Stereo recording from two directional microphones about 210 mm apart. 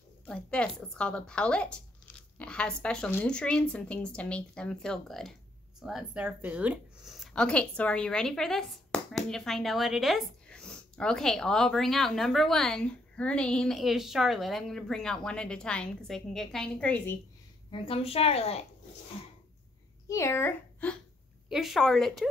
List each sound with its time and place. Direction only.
0.3 s a woman's voice: 5° left (ahead or behind)
17.6 s a woman's voice: 25° left (ahead or behind)
20.1 s a woman's voice: 15° left (ahead or behind)